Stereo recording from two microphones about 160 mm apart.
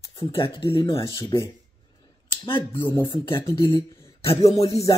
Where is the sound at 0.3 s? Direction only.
30° left (ahead or behind).